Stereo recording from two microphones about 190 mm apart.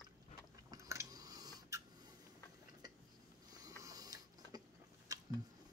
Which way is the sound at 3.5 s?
20° right (ahead or behind).